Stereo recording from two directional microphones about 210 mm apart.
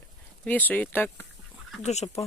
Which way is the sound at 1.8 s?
30° left (ahead or behind).